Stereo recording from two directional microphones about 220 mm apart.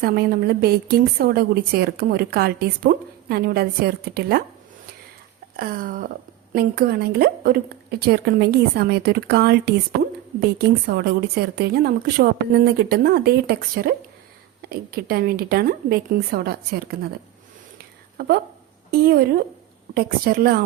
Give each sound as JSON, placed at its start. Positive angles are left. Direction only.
{"t": 0.0, "sound": "a woman's voice", "side_deg": -45}
{"t": 5.5, "sound": "a sound", "side_deg": -40}
{"t": 6.5, "sound": "a woman's voice", "side_deg": -45}
{"t": 18.9, "sound": "a woman's voice", "side_deg": -45}